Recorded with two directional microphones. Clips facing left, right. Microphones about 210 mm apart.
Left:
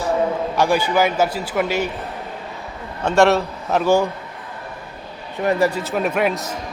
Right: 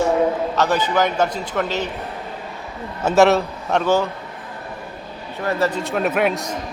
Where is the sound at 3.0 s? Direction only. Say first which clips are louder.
Right 1 dB; 5° right (ahead or behind).